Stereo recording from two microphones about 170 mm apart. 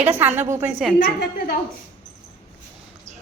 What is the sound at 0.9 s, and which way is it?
Speech, 55° left (ahead or behind).